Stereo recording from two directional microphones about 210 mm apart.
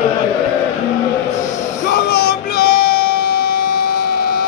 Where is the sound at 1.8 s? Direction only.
50° left (ahead or behind).